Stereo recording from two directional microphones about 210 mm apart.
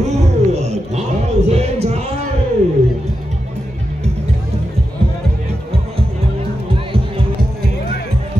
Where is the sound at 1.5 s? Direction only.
30° right (ahead or behind).